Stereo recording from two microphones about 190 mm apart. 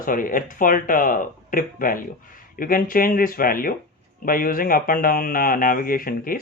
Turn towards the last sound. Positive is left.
turn(degrees=50)  # may be behind; listen again after turning